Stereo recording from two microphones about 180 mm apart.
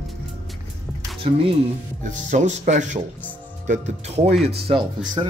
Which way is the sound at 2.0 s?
45° right (ahead or behind).